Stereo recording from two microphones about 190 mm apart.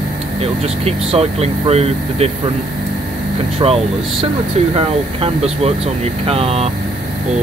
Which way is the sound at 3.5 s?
30° right (ahead or behind).